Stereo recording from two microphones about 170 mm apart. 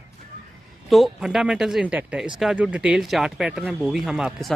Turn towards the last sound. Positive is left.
turn(degrees=0)  # may be behind; listen again after turning